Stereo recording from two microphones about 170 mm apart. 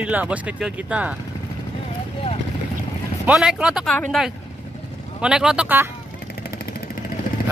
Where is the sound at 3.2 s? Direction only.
5° right (ahead or behind).